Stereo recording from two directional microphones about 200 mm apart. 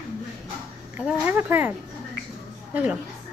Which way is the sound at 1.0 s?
10° right (ahead or behind).